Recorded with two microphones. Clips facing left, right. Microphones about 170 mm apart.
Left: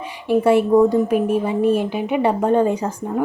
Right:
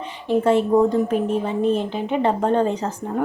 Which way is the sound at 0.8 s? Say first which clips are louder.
Left 3 dB; 10° left (ahead or behind).